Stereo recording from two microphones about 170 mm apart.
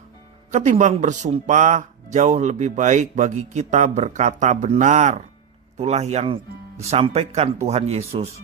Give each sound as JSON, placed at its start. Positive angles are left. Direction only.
{"t": 0.5, "sound": "speech", "side_deg": -45}